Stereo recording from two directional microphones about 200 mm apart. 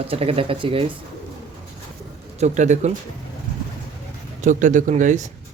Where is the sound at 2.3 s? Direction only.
35° right (ahead or behind).